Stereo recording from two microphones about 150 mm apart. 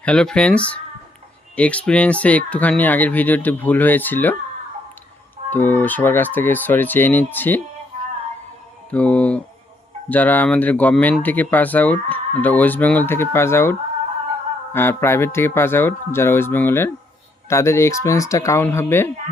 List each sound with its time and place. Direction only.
0.0 s speech: 5° left (ahead or behind)
5.5 s speech: 15° left (ahead or behind)
8.9 s speech: 10° left (ahead or behind)